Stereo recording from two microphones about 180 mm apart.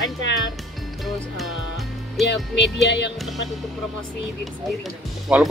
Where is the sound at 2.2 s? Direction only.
75° left (ahead or behind).